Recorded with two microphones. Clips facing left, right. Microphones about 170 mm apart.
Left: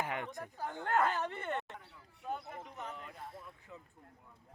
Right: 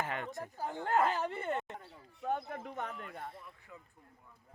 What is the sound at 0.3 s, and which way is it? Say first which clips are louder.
Speech: right 2 dB; 20° right (ahead or behind).